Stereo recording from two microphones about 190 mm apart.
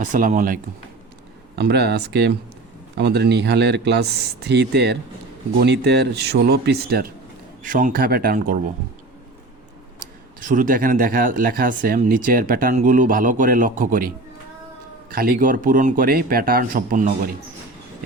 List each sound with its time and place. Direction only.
0.0 s speech: 45° right (ahead or behind)
1.5 s speech: 60° right (ahead or behind)
7.6 s speech: 45° right (ahead or behind)
10.4 s speech: 45° right (ahead or behind)
15.1 s speech: 50° right (ahead or behind)